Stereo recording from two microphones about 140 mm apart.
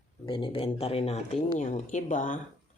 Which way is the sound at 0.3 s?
40° left (ahead or behind).